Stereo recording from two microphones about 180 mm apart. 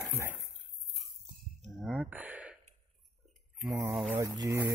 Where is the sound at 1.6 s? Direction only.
Centre (ahead or behind).